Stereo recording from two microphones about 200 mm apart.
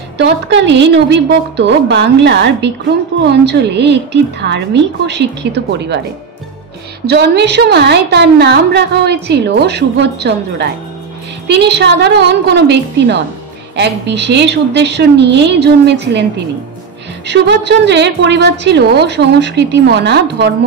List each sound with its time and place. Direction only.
0.2 s a woman's voice: 60° right (ahead or behind)
7.1 s a woman's voice: 55° right (ahead or behind)
17.3 s a woman's voice: 60° right (ahead or behind)